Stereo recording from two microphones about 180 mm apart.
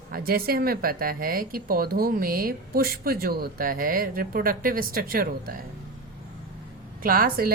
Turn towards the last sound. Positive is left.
turn(degrees=-55)  # may be behind; listen again after turning